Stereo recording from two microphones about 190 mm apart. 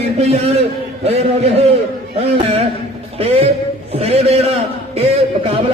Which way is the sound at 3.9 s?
30° right (ahead or behind).